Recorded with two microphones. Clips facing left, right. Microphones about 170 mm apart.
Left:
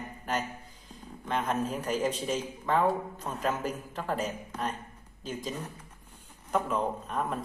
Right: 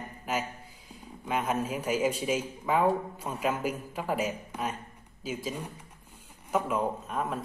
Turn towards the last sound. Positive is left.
turn(degrees=0)  # may be behind; listen again after turning